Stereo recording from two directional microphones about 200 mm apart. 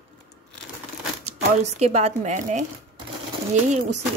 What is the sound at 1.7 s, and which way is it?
Speech, 30° right (ahead or behind).